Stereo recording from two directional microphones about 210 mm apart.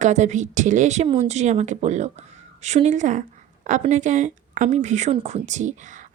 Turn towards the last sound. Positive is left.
turn(degrees=-35)  # may be behind; listen again after turning